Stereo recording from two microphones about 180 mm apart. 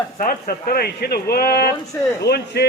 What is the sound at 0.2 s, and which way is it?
Speech, 50° left (ahead or behind).